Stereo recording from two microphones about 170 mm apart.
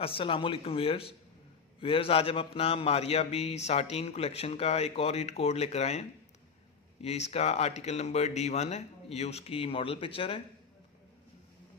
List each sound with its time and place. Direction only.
0.0 s speech: 30° left (ahead or behind)